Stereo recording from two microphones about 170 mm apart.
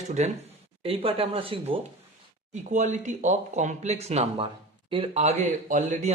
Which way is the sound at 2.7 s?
45° right (ahead or behind).